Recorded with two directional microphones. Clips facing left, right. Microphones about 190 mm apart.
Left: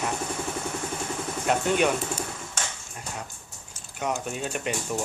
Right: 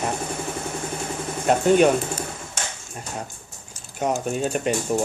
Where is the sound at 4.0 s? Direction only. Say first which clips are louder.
Right 6 dB; 40° right (ahead or behind).